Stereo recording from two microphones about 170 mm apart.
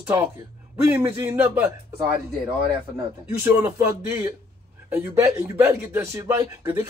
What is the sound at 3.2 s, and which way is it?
Speech, 10° right (ahead or behind).